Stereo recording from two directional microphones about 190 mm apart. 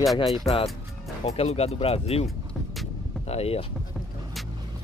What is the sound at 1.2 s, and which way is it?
Speech, 30° left (ahead or behind).